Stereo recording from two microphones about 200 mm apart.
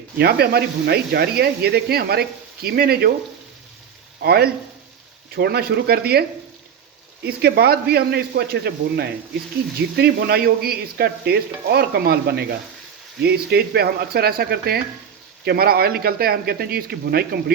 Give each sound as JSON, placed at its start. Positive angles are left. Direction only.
{"t": 0.2, "sound": "stir", "side_deg": -50}
{"t": 4.2, "sound": "stir", "side_deg": -50}
{"t": 7.3, "sound": "stir", "side_deg": -50}